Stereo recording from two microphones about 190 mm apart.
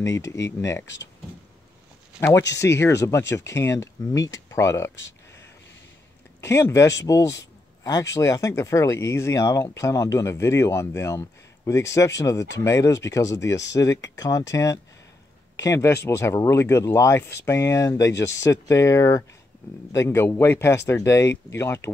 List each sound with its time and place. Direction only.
0.0 s speech: 15° left (ahead or behind)
2.1 s speech: 15° left (ahead or behind)
6.4 s speech: 15° left (ahead or behind)